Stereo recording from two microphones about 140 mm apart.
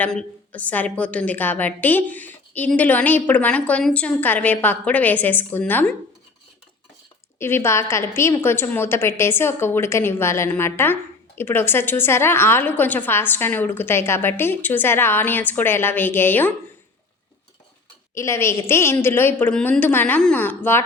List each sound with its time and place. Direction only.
0.0 s a woman's voice: 10° left (ahead or behind)
7.3 s a woman's voice: 15° left (ahead or behind)
18.1 s a woman's voice: 20° left (ahead or behind)